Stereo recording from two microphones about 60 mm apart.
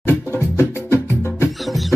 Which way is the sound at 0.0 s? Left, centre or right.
Left.